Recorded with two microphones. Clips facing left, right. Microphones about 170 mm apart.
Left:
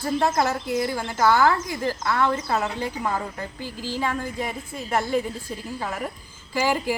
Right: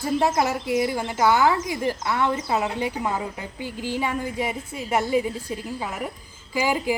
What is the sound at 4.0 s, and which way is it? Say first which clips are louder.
Speech: even; 15° right (ahead or behind).